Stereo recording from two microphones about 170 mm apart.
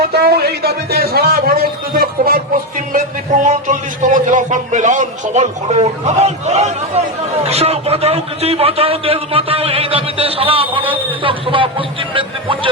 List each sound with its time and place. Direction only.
0.1 s a man's voice: 70° right (ahead or behind); by 12.7 s 30° right (ahead or behind)